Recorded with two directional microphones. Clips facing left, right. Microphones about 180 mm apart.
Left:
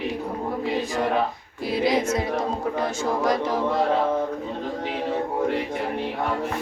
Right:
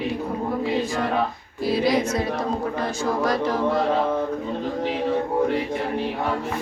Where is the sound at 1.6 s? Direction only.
20° left (ahead or behind).